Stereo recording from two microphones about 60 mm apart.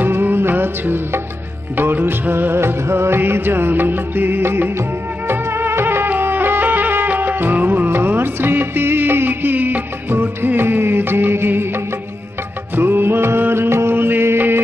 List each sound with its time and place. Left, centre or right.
0.0 s music: right
1.8 s music of bollywood: right
5.3 s music: right